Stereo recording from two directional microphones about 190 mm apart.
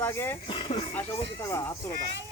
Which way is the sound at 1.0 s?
15° left (ahead or behind).